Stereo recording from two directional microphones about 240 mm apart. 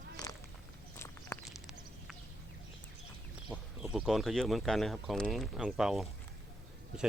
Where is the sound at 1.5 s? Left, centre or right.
Centre.